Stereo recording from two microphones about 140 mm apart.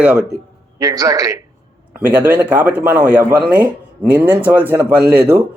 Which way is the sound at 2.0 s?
10° right (ahead or behind).